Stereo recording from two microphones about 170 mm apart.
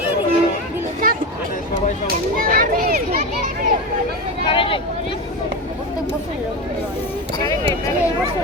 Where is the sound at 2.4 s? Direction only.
55° right (ahead or behind).